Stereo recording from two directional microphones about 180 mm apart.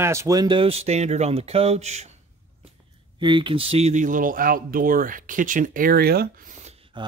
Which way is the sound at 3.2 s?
25° right (ahead or behind).